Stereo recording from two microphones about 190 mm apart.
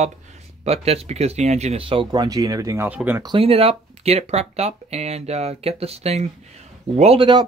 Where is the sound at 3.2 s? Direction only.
30° right (ahead or behind).